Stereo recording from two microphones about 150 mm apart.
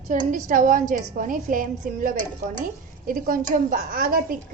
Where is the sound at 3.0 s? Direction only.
70° right (ahead or behind).